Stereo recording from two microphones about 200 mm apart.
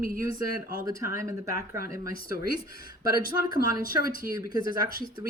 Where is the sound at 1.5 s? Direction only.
50° left (ahead or behind).